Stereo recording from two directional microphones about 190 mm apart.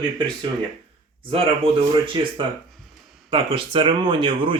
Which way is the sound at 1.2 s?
30° right (ahead or behind).